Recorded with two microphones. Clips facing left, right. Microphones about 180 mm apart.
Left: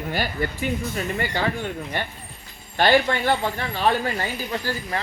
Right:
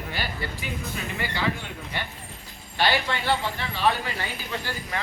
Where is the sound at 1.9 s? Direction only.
50° left (ahead or behind).